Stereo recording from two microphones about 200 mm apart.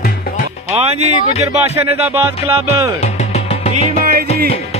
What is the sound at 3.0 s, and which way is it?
Music, 30° left (ahead or behind).